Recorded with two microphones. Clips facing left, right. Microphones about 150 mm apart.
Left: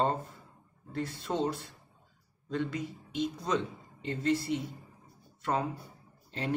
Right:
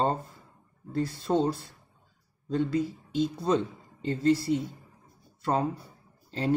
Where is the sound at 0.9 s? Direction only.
35° right (ahead or behind).